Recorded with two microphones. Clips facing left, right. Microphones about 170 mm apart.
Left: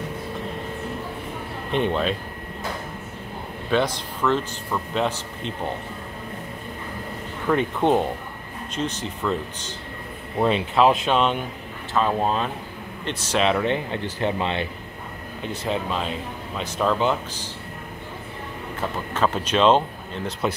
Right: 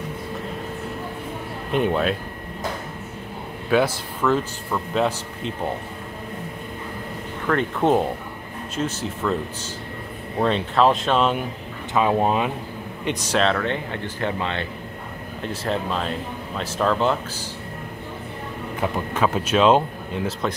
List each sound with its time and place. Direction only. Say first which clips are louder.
1.7 s speech: right 2 dB; 5° right (ahead or behind)
3.7 s speech: right 2 dB; 5° right (ahead or behind)
7.5 s speech: left 1 dB; 10° left (ahead or behind)
8.7 s speech: right 2 dB; 5° right (ahead or behind)
10.4 s speech: even; 5° left (ahead or behind)
11.9 s a man's voice: right 2 dB; 15° right (ahead or behind)
13.3 s speech: left 1 dB; 10° left (ahead or behind)
15.4 s speech: right 1 dB; centre (ahead or behind)
18.8 s speech: right 2 dB; 10° right (ahead or behind)
20.4 s speech: left 3 dB; 5° left (ahead or behind)